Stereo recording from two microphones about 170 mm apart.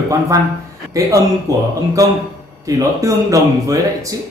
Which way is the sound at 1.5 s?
20° right (ahead or behind).